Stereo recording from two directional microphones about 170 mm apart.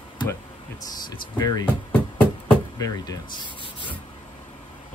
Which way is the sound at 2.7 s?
20° left (ahead or behind).